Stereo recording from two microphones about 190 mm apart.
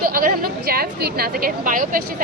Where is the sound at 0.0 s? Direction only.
50° right (ahead or behind).